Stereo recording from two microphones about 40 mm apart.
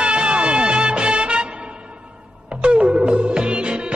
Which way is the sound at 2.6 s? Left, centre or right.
Right.